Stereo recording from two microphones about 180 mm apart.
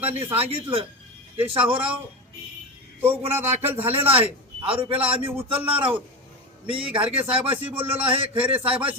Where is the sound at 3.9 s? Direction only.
30° right (ahead or behind).